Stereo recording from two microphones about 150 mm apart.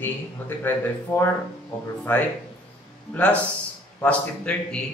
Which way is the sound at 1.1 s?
20° left (ahead or behind).